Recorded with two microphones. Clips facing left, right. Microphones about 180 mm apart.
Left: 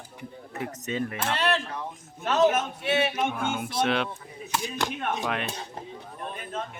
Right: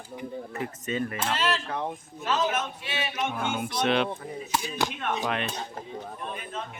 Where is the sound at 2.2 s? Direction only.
55° left (ahead or behind).